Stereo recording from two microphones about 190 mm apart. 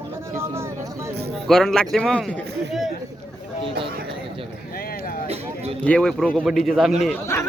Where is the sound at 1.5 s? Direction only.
Centre (ahead or behind).